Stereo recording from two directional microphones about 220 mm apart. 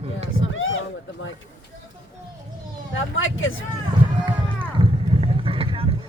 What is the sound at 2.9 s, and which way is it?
Speech, 60° left (ahead or behind).